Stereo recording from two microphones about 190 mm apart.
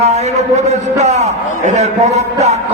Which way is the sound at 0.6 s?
35° right (ahead or behind).